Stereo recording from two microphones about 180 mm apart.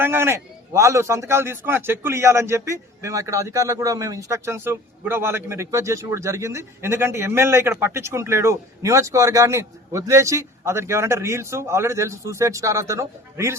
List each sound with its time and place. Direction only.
0.0 s a man's voice: 15° right (ahead or behind)